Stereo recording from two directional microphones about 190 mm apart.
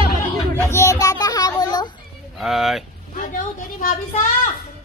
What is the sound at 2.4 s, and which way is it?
Speech, centre (ahead or behind).